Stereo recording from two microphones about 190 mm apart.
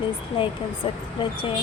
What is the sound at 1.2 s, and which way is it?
Speech, 25° left (ahead or behind).